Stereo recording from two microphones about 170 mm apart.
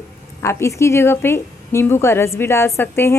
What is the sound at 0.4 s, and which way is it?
A woman's voice, 15° left (ahead or behind).